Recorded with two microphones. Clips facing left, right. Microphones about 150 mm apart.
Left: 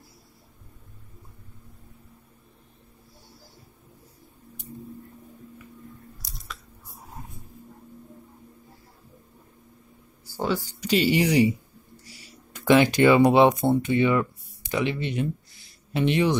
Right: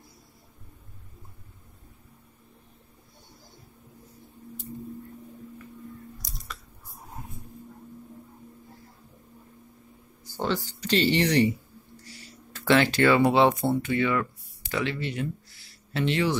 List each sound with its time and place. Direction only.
6.2 s chewing: centre (ahead or behind)
10.2 s speech: 10° left (ahead or behind)